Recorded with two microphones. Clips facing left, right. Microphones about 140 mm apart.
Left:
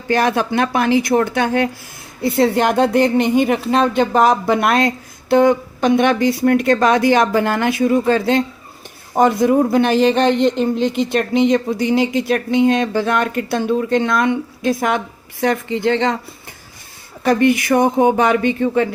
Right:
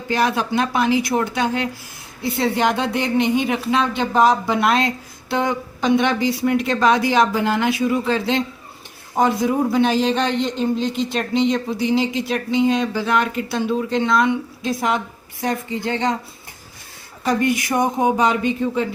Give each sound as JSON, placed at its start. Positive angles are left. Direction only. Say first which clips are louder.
{"t": 0.1, "sound": "speech", "louder": "left 3 dB", "side_deg": 55}
{"t": 17.2, "sound": "speech", "louder": "left 5 dB", "side_deg": 65}